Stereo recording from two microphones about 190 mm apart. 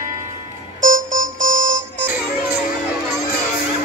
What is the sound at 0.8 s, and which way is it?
Music, 40° right (ahead or behind).